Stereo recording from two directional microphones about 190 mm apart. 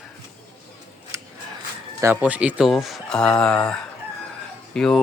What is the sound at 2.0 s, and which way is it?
Speech, 10° right (ahead or behind).